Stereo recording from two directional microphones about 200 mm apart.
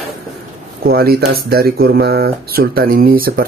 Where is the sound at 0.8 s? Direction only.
50° right (ahead or behind).